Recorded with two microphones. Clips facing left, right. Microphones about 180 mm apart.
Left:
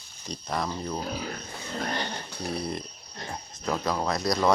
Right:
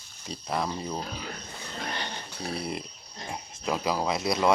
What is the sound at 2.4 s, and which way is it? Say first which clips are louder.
Speech: left 1 dB; 5° right (ahead or behind).